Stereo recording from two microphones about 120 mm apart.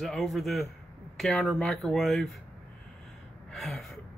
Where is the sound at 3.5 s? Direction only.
Centre (ahead or behind).